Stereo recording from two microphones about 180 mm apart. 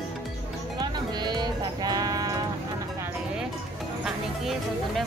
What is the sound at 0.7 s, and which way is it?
Music, 25° right (ahead or behind).